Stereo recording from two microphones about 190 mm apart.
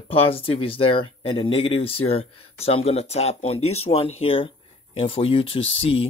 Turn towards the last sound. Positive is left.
turn(degrees=30)  # may be behind; listen again after turning